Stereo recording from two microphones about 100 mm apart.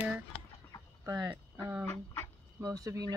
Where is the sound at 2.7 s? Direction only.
35° right (ahead or behind).